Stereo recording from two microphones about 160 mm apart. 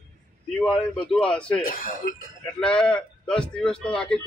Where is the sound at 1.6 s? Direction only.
60° left (ahead or behind).